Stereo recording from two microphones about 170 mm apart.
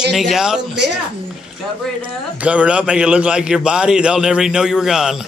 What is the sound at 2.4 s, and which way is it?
A man's voice, 5° right (ahead or behind).